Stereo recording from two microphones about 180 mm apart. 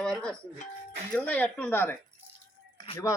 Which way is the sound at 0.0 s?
5° left (ahead or behind).